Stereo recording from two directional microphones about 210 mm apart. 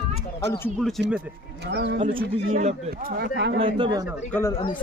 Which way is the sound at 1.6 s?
55° right (ahead or behind).